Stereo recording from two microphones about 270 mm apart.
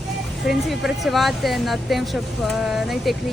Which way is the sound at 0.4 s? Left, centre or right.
Centre.